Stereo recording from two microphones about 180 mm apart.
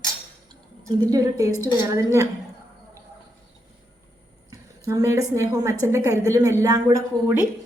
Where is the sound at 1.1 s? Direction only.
20° right (ahead or behind).